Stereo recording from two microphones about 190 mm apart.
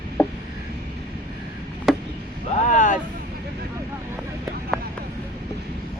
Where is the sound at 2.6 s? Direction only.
40° left (ahead or behind).